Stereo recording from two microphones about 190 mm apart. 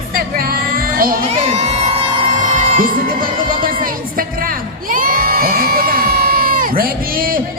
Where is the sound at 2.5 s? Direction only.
45° right (ahead or behind).